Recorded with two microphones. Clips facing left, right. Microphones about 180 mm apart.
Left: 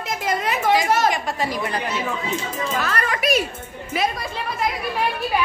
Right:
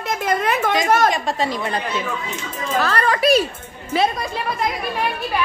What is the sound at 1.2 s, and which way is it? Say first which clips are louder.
Speech: right 2 dB; 25° right (ahead or behind).